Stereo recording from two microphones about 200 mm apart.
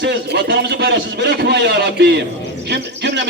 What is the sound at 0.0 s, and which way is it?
A man's voice, 60° right (ahead or behind).